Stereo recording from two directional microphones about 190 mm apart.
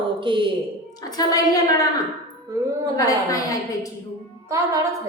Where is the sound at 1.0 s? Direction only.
20° left (ahead or behind).